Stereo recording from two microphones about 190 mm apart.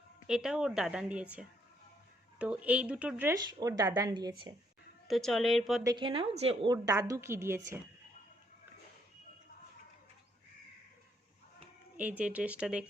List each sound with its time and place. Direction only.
0.3 s a woman's voice: 5° right (ahead or behind); by 4.5 s 20° right (ahead or behind)
5.0 s a woman's voice: centre (ahead or behind)
5.8 s a woman's voice: 20° right (ahead or behind)
11.9 s speech: 10° right (ahead or behind)